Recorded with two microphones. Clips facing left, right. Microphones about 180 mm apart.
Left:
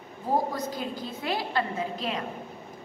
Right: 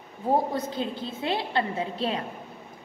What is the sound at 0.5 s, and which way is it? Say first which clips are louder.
A woman's voice: right 2 dB; 25° right (ahead or behind).